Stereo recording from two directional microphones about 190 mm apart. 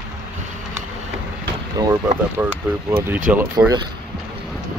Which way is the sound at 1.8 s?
20° right (ahead or behind).